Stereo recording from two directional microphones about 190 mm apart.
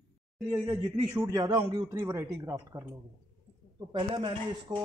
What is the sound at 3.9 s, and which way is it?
Speech, 25° right (ahead or behind).